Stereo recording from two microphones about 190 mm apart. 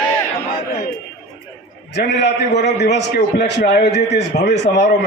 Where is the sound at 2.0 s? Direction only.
65° left (ahead or behind).